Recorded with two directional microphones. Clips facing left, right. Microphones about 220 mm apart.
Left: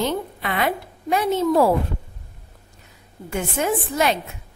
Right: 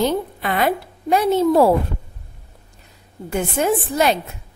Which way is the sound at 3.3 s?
35° right (ahead or behind).